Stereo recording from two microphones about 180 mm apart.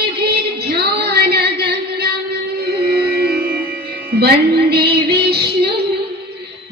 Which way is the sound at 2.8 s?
60° right (ahead or behind).